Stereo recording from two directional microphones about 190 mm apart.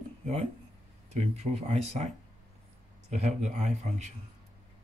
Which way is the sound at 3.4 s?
35° right (ahead or behind).